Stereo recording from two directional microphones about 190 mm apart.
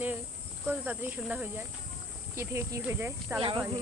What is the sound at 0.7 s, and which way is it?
Speech, 10° right (ahead or behind).